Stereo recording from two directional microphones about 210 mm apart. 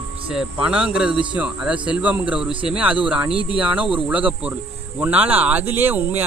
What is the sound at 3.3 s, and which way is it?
Speech, 25° left (ahead or behind).